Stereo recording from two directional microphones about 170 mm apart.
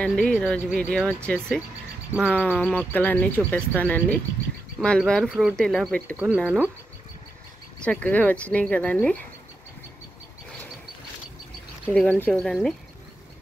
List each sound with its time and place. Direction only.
0.0 s speech: 5° left (ahead or behind)
6.1 s speech: 10° right (ahead or behind)
7.8 s speech: 5° left (ahead or behind)
11.8 s speech: 5° left (ahead or behind)